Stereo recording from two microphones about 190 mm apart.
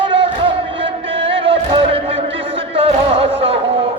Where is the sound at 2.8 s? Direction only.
30° right (ahead or behind).